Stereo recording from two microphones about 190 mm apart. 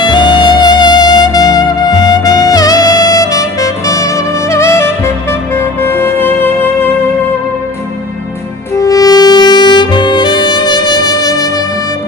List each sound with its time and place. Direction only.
0.0 s music: 25° left (ahead or behind)
8.7 s saxophone: 20° left (ahead or behind)